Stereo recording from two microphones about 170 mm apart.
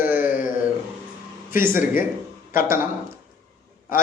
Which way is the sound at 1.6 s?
15° right (ahead or behind).